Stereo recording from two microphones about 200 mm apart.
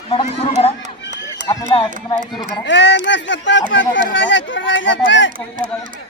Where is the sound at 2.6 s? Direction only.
65° left (ahead or behind).